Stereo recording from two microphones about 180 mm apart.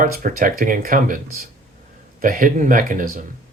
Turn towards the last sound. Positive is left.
turn(degrees=-50)  # may be behind; listen again after turning